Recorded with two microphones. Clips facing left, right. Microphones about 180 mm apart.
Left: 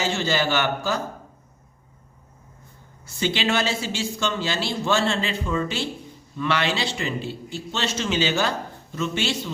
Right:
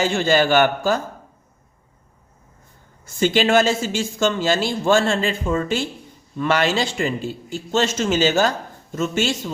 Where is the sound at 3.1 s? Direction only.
45° right (ahead or behind).